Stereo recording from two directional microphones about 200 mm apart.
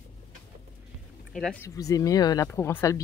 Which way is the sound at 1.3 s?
5° left (ahead or behind).